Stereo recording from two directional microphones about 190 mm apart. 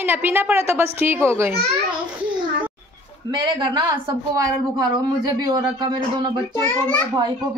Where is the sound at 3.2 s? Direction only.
20° right (ahead or behind).